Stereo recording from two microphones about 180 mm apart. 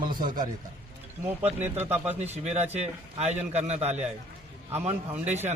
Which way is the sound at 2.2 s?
35° right (ahead or behind).